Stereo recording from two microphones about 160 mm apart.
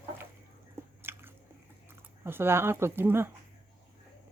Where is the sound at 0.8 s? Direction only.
15° right (ahead or behind).